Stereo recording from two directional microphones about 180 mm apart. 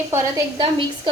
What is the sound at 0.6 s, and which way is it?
Speech, 25° right (ahead or behind).